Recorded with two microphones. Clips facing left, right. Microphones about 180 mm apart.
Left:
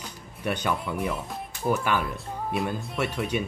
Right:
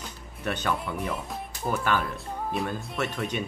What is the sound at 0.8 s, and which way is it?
A child's voice, centre (ahead or behind).